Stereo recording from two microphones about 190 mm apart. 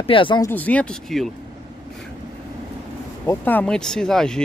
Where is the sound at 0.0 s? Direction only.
25° left (ahead or behind).